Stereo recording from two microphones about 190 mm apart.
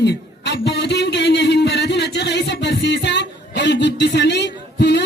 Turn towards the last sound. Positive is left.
turn(degrees=65)  # may be behind; listen again after turning